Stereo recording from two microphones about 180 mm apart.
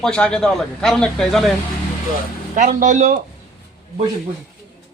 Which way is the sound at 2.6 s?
45° right (ahead or behind).